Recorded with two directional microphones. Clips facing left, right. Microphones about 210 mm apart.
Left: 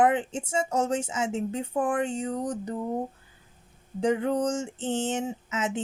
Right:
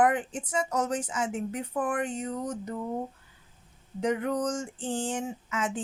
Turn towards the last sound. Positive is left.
turn(degrees=25)  # may be behind; listen again after turning